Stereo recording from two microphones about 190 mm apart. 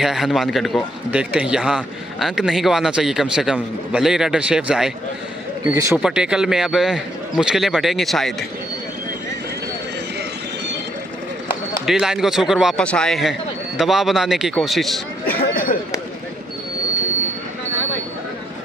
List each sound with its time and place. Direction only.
0.0 s a man's voice: centre (ahead or behind)
5.6 s a man's voice: 15° right (ahead or behind)
5.9 s a man's voice: 5° right (ahead or behind)
11.8 s a man's voice: centre (ahead or behind)
15.2 s a sound: 50° left (ahead or behind)